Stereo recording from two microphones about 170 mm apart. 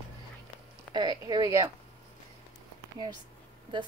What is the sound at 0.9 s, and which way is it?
Speech, 25° right (ahead or behind).